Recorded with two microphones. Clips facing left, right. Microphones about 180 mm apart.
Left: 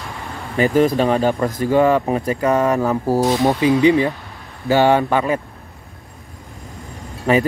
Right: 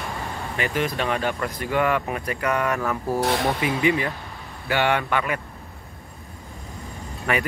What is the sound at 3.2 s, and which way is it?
Speech, 65° right (ahead or behind).